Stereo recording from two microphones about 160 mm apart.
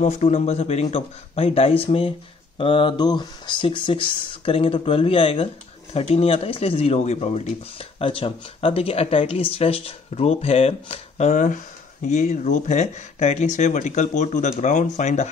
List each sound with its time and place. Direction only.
0.0 s speech: 45° left (ahead or behind)